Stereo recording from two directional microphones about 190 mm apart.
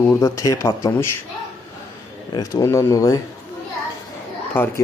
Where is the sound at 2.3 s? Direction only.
15° left (ahead or behind).